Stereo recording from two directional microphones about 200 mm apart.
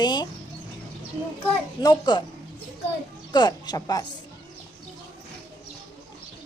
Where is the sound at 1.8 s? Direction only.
20° left (ahead or behind).